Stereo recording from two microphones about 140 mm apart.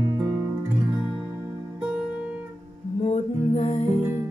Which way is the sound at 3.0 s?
50° left (ahead or behind).